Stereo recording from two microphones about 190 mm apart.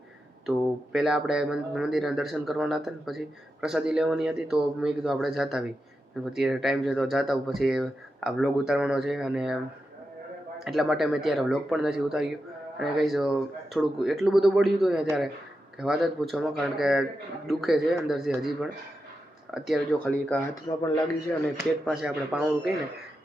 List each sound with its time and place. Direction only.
0.9 s speech: 5° right (ahead or behind)
10.6 s speech: centre (ahead or behind)
19.5 s speech: centre (ahead or behind)
20.7 s a man's voice: 20° left (ahead or behind)
21.6 s speech: 5° right (ahead or behind)